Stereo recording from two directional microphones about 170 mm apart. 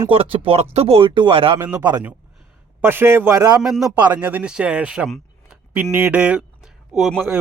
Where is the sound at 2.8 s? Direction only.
15° right (ahead or behind).